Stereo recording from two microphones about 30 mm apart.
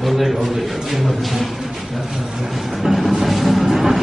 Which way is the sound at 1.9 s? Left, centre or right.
Centre.